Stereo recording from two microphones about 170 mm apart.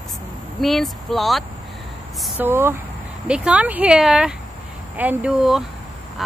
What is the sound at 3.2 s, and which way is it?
Speech, 5° right (ahead or behind).